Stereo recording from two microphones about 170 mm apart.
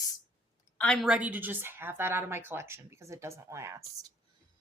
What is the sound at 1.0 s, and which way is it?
Speech, 5° right (ahead or behind).